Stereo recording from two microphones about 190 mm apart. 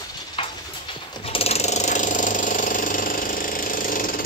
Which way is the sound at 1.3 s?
35° left (ahead or behind).